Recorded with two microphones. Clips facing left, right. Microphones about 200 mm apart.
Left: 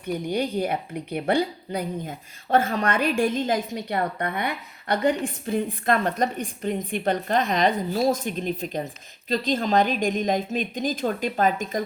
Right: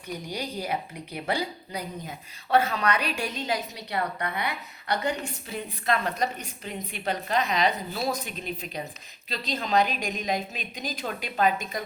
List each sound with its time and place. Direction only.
0.0 s a woman's voice: 55° left (ahead or behind)